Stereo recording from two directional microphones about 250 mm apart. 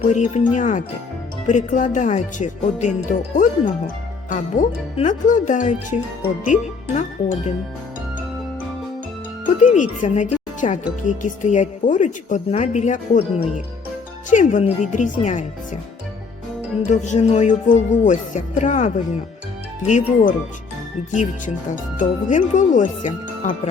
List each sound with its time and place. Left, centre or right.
0.1 s speech: left
9.6 s speech: left
16.8 s speech: left
19.9 s speech: left